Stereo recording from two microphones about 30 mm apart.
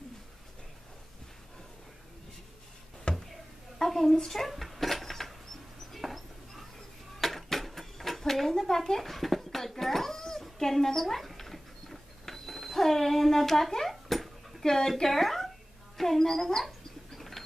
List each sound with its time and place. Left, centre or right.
3.3 s a sound: centre
7.2 s dishes: centre
10.6 s a sound: centre
14.6 s speech: centre
15.0 s speech: centre
17.1 s bird: centre